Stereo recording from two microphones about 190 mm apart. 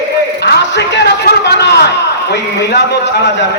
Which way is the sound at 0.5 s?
65° left (ahead or behind).